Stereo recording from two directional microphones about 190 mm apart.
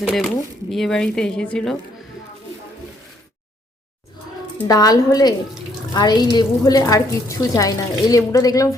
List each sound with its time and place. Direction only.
0.0 s a woman's voice: centre (ahead or behind)
4.5 s a woman's voice: 20° left (ahead or behind)